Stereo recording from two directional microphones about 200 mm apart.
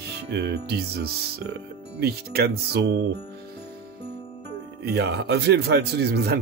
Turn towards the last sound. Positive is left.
turn(degrees=-55)  # may be behind; listen again after turning